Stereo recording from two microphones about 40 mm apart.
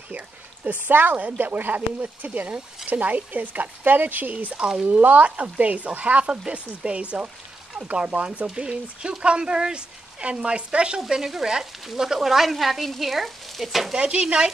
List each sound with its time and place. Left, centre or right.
0.8 s speech: right
4.6 s frying: centre
4.8 s speech: right
11.0 s frying: centre
11.8 s stir: centre
13.9 s speech: right